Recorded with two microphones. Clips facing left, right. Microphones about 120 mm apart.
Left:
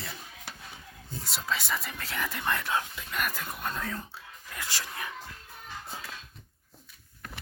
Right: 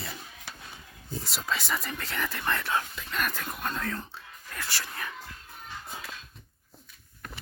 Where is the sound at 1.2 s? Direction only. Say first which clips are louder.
Even; centre (ahead or behind); by 5.1 s 15° left (ahead or behind).